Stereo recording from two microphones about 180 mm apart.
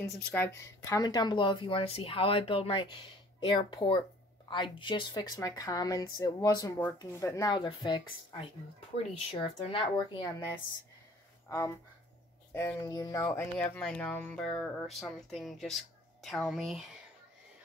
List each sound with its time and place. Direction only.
0.0 s speech: 10° left (ahead or behind); by 10.3 s 25° left (ahead or behind)
11.4 s speech: 15° left (ahead or behind); by 16.8 s centre (ahead or behind)